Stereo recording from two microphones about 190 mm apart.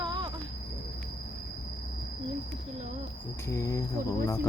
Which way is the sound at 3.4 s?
15° left (ahead or behind).